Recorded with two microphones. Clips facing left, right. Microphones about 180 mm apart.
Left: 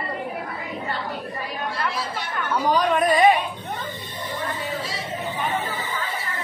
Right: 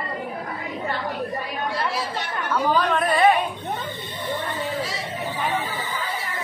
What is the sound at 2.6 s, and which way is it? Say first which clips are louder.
Speech: left 2 dB; 15° left (ahead or behind).